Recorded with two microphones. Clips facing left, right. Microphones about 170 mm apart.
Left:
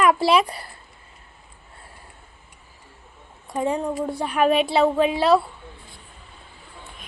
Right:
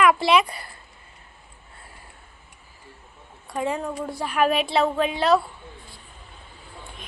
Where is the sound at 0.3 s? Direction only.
35° left (ahead or behind).